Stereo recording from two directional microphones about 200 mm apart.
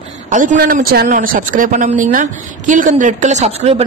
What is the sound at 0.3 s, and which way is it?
A man's voice, 40° right (ahead or behind).